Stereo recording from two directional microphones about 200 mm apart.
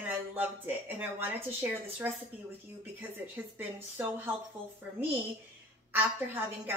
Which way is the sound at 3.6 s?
10° right (ahead or behind).